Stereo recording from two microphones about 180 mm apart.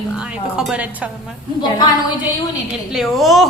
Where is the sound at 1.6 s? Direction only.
25° left (ahead or behind).